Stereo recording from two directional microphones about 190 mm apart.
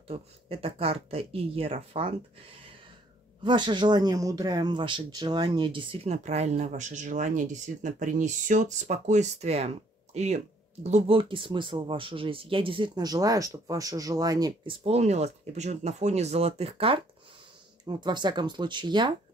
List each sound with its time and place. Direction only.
0.1 s speech: 30° right (ahead or behind)
14.9 s speech: 35° right (ahead or behind)